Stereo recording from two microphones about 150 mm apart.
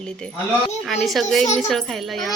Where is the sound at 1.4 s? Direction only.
50° left (ahead or behind).